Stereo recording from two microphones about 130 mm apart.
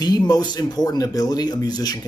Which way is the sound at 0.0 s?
30° left (ahead or behind).